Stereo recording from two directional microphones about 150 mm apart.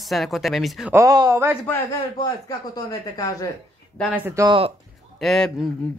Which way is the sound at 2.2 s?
25° left (ahead or behind).